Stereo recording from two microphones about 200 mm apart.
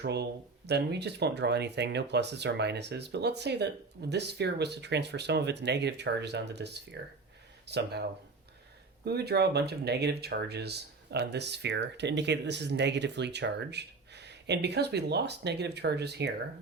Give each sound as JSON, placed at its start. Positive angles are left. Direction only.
{"t": 0.0, "sound": "speech", "side_deg": -55}
{"t": 9.0, "sound": "speech", "side_deg": -55}